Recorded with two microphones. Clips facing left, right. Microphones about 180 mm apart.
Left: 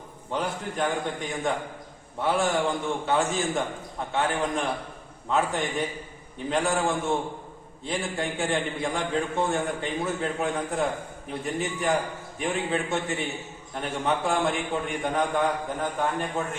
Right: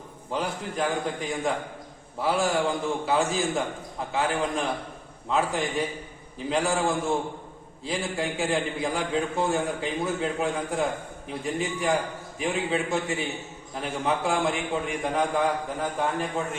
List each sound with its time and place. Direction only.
0.3 s a man's voice: centre (ahead or behind)